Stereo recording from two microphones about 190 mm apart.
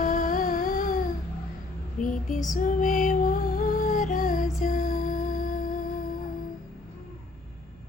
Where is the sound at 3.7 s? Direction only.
45° left (ahead or behind).